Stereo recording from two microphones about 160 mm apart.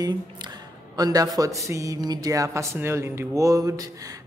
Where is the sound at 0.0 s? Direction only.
25° right (ahead or behind).